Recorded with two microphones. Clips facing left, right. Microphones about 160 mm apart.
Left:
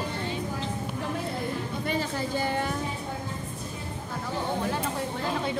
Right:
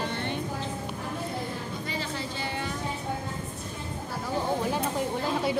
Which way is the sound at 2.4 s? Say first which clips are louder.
Left 6 dB; 45° left (ahead or behind).